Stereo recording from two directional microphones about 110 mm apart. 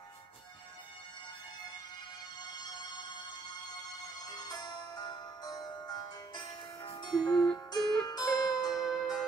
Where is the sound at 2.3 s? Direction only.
40° left (ahead or behind).